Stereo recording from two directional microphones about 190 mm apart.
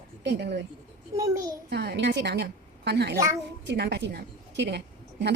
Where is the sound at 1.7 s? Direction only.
60° right (ahead or behind).